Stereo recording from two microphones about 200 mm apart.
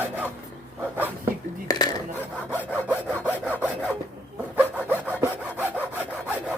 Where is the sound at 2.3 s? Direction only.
10° left (ahead or behind).